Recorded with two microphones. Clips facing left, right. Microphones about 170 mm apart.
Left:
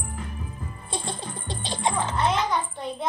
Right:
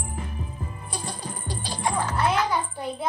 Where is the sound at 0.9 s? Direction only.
25° left (ahead or behind).